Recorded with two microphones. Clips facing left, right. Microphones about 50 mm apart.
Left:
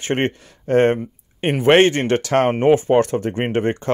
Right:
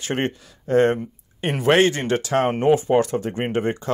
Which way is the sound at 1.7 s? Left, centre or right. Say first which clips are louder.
Left 4 dB; left.